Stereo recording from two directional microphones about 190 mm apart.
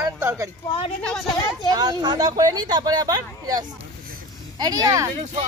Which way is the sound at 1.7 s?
20° right (ahead or behind).